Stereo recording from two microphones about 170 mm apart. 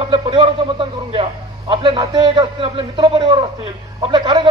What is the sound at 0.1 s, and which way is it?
A man's voice, 30° right (ahead or behind).